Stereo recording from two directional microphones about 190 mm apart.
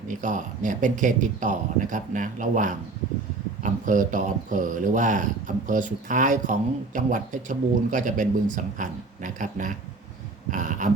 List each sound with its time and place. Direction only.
0.1 s speech: 40° right (ahead or behind)